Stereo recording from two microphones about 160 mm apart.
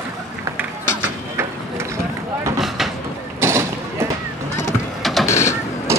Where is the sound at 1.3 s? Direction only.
15° right (ahead or behind).